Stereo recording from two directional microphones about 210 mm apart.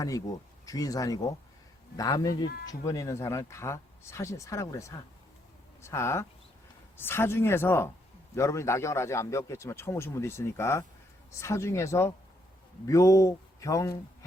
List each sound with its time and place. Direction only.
0.0 s a man's voice: 15° left (ahead or behind)